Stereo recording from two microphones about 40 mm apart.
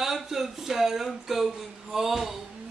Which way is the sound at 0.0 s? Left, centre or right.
Centre.